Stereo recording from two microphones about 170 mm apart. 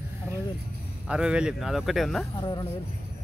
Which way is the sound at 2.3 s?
25° left (ahead or behind).